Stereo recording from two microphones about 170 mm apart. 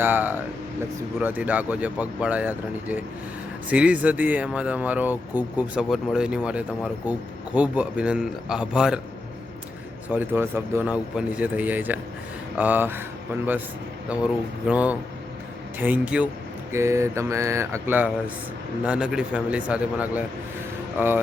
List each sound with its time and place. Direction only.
0.0 s speech: 10° right (ahead or behind)
10.1 s speech: 10° right (ahead or behind)
14.7 s speech: 10° right (ahead or behind)